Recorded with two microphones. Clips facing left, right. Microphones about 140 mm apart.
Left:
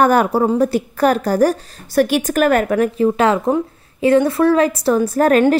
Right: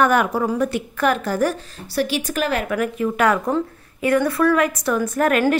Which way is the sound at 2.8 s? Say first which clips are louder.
Left 5 dB; 30° left (ahead or behind).